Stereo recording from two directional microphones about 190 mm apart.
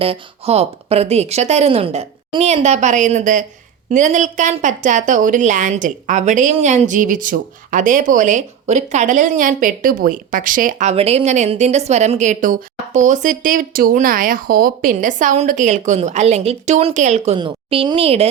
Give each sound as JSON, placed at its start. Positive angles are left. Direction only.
{"t": 0.0, "sound": "a woman's voice", "side_deg": -30}